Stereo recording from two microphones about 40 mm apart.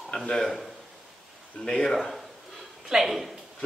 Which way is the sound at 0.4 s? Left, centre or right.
Centre.